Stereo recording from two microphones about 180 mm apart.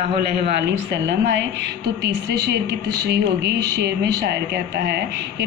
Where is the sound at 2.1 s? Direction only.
70° right (ahead or behind).